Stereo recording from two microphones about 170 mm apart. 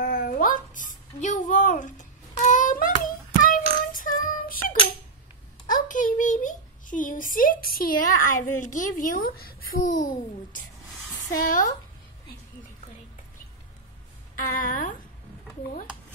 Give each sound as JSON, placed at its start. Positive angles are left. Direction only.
{"t": 0.0, "sound": "a sound", "side_deg": 50}
{"t": 7.7, "sound": "a woman's voice", "side_deg": 55}
{"t": 14.5, "sound": "a woman's voice", "side_deg": 55}